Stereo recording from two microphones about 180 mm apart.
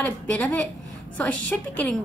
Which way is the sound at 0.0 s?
10° left (ahead or behind).